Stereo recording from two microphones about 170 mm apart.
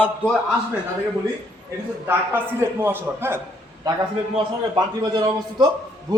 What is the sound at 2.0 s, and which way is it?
A man's voice, 15° right (ahead or behind).